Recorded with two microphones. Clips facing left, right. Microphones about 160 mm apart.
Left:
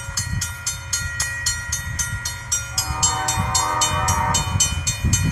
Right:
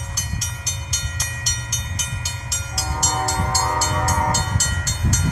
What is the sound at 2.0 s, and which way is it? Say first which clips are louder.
Train: right 2 dB; 5° right (ahead or behind).